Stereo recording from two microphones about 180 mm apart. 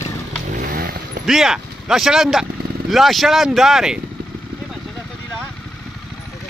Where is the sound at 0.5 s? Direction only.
45° right (ahead or behind).